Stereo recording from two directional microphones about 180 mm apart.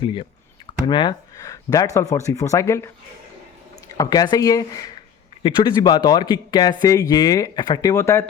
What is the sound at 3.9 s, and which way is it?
Speech, 20° left (ahead or behind).